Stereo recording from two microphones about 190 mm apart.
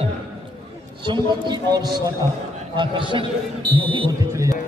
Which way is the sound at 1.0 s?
25° right (ahead or behind).